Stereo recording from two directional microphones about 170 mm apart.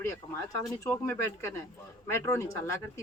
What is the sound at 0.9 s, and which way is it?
Speech, 15° left (ahead or behind).